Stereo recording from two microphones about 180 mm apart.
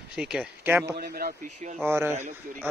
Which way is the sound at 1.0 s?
55° right (ahead or behind).